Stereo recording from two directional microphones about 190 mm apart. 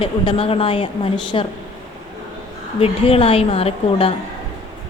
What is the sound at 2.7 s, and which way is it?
A woman's voice, 30° left (ahead or behind).